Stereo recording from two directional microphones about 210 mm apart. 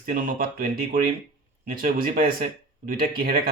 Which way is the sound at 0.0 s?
40° right (ahead or behind).